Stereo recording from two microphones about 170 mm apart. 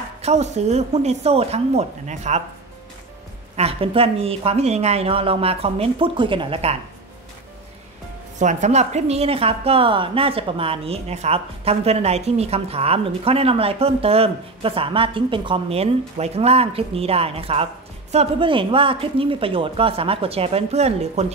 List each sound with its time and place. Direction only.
0.2 s a woman's voice: 40° right (ahead or behind)
3.5 s a woman's voice: 35° right (ahead or behind)
8.4 s a woman's voice: 45° right (ahead or behind)